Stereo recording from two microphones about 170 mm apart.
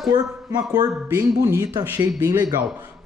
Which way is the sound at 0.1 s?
25° right (ahead or behind).